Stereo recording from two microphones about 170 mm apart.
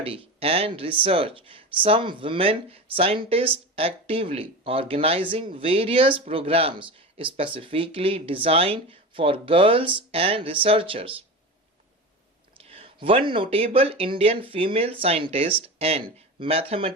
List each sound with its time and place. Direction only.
0.0 s speech: 35° right (ahead or behind)
12.5 s speech: 35° right (ahead or behind)